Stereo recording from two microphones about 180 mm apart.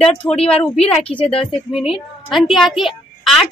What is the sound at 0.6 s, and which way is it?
Speech, 35° left (ahead or behind).